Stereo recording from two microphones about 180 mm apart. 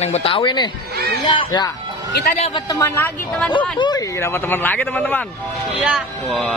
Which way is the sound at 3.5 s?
25° left (ahead or behind).